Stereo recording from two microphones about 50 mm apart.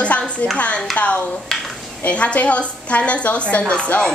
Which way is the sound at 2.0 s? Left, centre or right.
Left.